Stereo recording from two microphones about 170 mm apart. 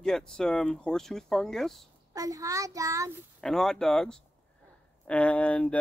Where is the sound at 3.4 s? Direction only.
5° left (ahead or behind).